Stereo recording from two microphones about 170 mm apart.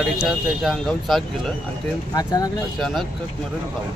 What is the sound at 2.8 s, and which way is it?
Speech, centre (ahead or behind).